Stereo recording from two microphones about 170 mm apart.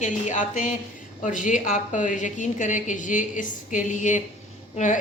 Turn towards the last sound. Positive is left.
turn(degrees=45)  # may be behind; listen again after turning